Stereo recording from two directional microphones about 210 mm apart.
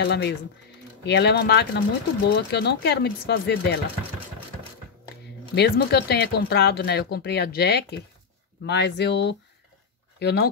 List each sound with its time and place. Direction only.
0.0 s speech: 55° left (ahead or behind)
5.5 s speech: 50° left (ahead or behind)